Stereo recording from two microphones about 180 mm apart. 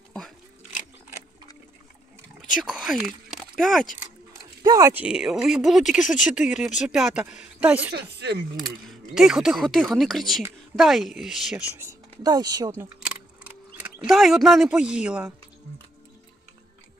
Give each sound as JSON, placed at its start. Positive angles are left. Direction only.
{"t": 2.6, "sound": "speech", "side_deg": -5}
{"t": 4.6, "sound": "speech", "side_deg": -20}
{"t": 5.0, "sound": "speech", "side_deg": -5}
{"t": 7.9, "sound": "speech", "side_deg": -65}
{"t": 8.6, "sound": "speech", "side_deg": 0}
{"t": 11.8, "sound": "speech", "side_deg": -20}
{"t": 13.8, "sound": "speech", "side_deg": -5}